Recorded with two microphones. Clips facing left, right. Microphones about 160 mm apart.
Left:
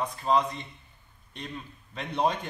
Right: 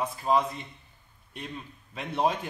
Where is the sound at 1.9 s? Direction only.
5° right (ahead or behind).